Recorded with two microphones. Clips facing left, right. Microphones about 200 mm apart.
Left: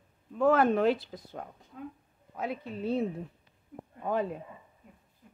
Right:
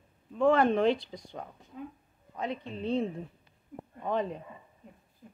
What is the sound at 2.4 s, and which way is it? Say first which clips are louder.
A woman's voice: even; 5° left (ahead or behind).